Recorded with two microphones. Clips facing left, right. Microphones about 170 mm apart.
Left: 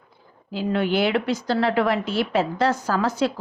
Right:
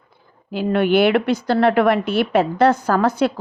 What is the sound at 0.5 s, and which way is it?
Speech, 60° right (ahead or behind).